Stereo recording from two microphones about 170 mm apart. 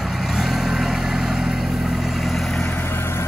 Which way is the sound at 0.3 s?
Centre (ahead or behind).